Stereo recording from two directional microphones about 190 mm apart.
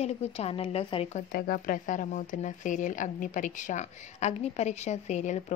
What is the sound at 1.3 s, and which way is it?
Speech, 50° left (ahead or behind).